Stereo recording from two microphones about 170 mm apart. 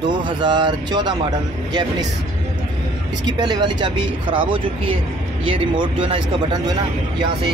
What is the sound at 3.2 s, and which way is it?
Speech, 25° right (ahead or behind).